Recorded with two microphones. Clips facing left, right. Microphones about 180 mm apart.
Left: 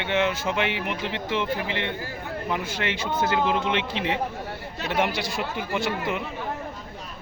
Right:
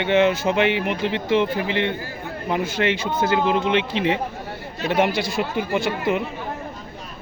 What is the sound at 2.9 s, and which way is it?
A man's voice, 10° right (ahead or behind).